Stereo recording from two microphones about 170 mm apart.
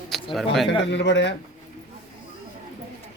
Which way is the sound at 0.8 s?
90° left.